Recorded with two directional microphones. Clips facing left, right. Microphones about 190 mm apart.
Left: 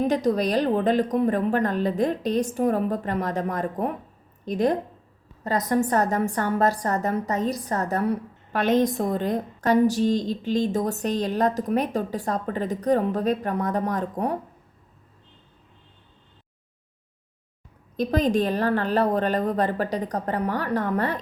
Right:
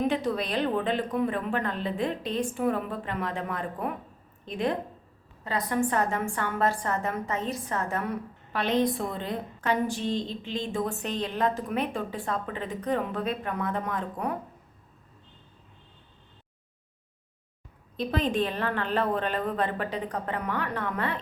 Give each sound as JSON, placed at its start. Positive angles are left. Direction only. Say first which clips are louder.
{"t": 0.0, "sound": "a woman's voice", "louder": "left 5 dB", "side_deg": 40}
{"t": 17.9, "sound": "a woman's voice", "louder": "left 5 dB", "side_deg": 40}